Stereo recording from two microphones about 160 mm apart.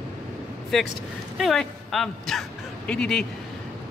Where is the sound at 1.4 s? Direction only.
Centre (ahead or behind).